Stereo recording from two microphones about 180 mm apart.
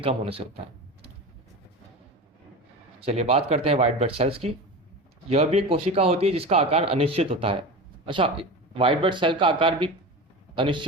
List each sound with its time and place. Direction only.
0.0 s speech: 30° right (ahead or behind)
3.0 s speech: 35° right (ahead or behind)